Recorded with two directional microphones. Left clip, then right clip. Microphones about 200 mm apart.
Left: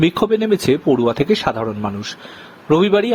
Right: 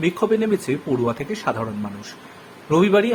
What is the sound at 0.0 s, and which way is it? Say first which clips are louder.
Speech: left 4 dB; 40° left (ahead or behind).